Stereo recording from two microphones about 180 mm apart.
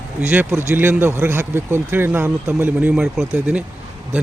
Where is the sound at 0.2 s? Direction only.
10° right (ahead or behind).